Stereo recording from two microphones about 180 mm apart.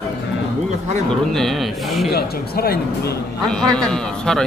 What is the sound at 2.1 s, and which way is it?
Speech, 60° left (ahead or behind).